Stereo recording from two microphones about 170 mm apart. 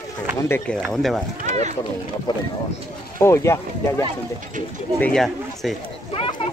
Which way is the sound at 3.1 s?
15° left (ahead or behind).